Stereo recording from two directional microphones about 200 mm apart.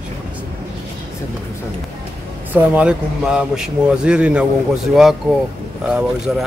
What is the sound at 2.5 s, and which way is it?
Speech, 5° right (ahead or behind).